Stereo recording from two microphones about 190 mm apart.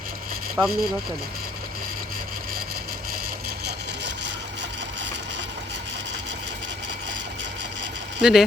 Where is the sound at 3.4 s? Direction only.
60° right (ahead or behind).